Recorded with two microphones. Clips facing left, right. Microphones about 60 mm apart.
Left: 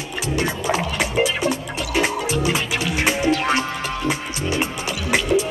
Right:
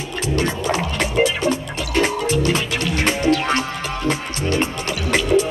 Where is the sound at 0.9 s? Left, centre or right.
Centre.